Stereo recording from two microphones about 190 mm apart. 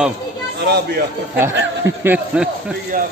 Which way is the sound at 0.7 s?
60° right (ahead or behind).